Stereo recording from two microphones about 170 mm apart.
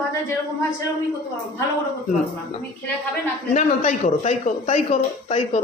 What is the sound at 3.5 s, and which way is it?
A man's voice, 45° left (ahead or behind).